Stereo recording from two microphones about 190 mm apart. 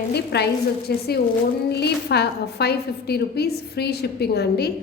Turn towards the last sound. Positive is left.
turn(degrees=60)  # may be behind; listen again after turning